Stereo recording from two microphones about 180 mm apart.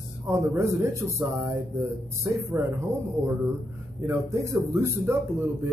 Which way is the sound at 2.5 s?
15° right (ahead or behind).